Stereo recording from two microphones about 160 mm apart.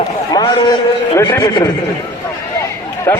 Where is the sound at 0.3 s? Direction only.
25° left (ahead or behind).